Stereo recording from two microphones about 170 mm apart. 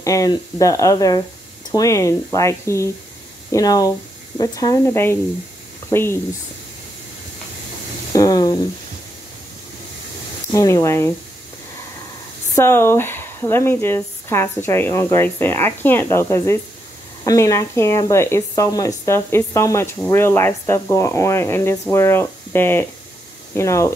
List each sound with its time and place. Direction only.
0.0 s speech: 20° left (ahead or behind)
8.1 s a sound: 20° left (ahead or behind)
10.5 s speech: 20° left (ahead or behind)
12.5 s speech: 15° left (ahead or behind)